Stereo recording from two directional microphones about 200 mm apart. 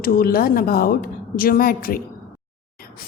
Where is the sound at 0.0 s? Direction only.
45° left (ahead or behind).